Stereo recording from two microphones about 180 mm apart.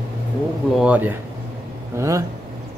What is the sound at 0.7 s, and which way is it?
A man's voice, 5° right (ahead or behind).